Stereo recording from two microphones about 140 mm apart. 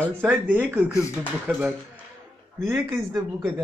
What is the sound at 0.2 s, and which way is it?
A man's voice, 15° right (ahead or behind).